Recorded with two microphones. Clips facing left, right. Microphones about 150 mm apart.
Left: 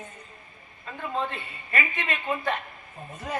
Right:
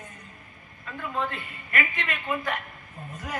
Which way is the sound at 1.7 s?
25° left (ahead or behind).